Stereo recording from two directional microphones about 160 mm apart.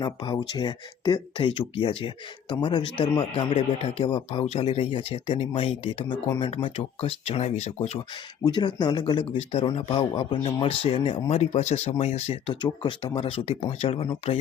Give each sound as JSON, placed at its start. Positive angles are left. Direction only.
{"t": 0.0, "sound": "speech", "side_deg": 30}
{"t": 8.4, "sound": "speech", "side_deg": 25}